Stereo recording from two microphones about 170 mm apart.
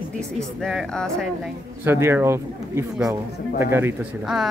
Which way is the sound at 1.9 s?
15° right (ahead or behind).